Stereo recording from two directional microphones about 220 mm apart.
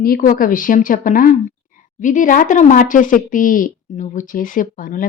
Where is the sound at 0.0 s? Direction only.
40° left (ahead or behind).